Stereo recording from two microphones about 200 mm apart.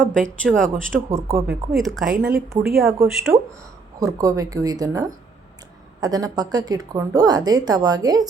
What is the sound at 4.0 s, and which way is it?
Speech, 15° right (ahead or behind).